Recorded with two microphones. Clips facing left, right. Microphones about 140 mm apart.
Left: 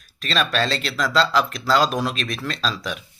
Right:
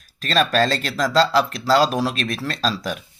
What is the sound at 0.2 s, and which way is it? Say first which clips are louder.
Speech: right 4 dB; 40° right (ahead or behind).